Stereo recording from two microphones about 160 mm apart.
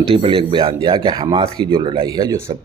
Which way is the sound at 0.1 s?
35° right (ahead or behind).